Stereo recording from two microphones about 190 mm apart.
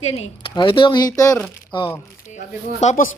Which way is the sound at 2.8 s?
40° left (ahead or behind).